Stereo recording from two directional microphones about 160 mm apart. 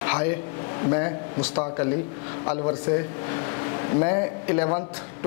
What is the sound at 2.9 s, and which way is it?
Speech, 20° left (ahead or behind).